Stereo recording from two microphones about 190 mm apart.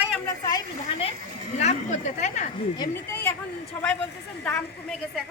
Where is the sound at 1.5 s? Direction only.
40° left (ahead or behind).